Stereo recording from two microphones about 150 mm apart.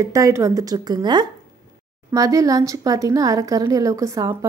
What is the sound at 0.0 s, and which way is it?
A woman's voice, 20° right (ahead or behind).